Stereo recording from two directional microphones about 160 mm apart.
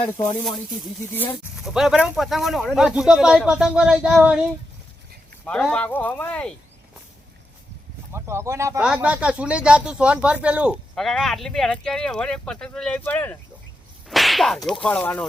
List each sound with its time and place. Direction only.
1.6 s speech: centre (ahead or behind)
5.5 s speech: 5° left (ahead or behind)
8.1 s speech: 15° right (ahead or behind)
8.8 s speech: 5° right (ahead or behind); by 13.4 s 10° left (ahead or behind)
14.1 s speech: centre (ahead or behind)